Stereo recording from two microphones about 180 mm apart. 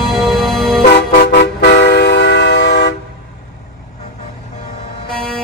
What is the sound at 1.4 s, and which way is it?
Vehicle, 70° left (ahead or behind).